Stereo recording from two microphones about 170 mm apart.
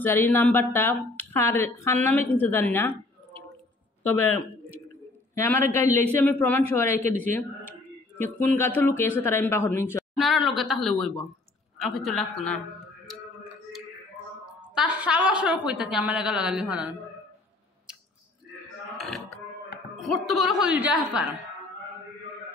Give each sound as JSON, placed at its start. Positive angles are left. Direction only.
{"t": 0.0, "sound": "a woman's voice", "side_deg": 15}
{"t": 10.1, "sound": "a woman's voice", "side_deg": 0}
{"t": 14.8, "sound": "a woman's voice", "side_deg": -10}
{"t": 18.9, "sound": "music", "side_deg": 0}
{"t": 20.0, "sound": "a woman's voice", "side_deg": 0}